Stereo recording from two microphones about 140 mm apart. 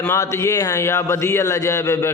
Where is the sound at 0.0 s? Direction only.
20° left (ahead or behind).